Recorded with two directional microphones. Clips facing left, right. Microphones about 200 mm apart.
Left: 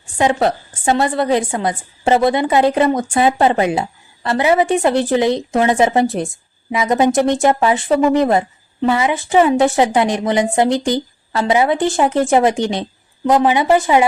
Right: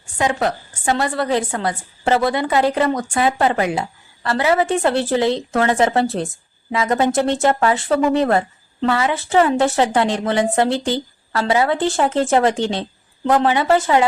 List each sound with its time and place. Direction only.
0.2 s a woman's voice: 25° left (ahead or behind)